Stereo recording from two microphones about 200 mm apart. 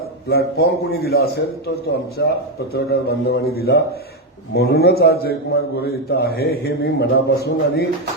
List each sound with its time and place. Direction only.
0.3 s a man's voice: 50° left (ahead or behind)